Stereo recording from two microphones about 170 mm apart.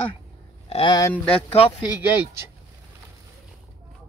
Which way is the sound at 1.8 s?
10° right (ahead or behind).